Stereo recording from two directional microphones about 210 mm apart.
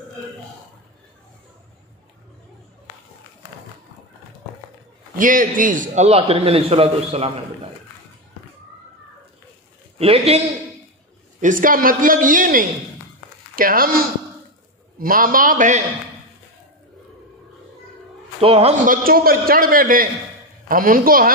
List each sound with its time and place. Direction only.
5.2 s a man's voice: 40° right (ahead or behind)
9.9 s a man's voice: 30° right (ahead or behind)
11.4 s a man's voice: 40° right (ahead or behind)
18.4 s a man's voice: 30° right (ahead or behind)
19.0 s a man's voice: 45° right (ahead or behind)